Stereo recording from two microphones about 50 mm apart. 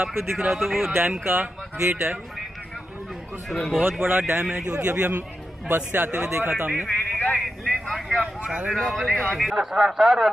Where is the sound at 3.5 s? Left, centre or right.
Centre.